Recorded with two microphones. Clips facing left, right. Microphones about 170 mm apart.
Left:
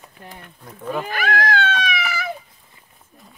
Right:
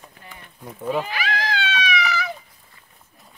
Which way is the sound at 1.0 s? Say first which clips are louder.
Left 5 dB; 50° left (ahead or behind).